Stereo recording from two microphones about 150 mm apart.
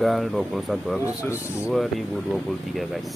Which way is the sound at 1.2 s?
15° left (ahead or behind).